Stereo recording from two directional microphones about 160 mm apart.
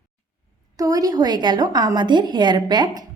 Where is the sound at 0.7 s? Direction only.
20° right (ahead or behind).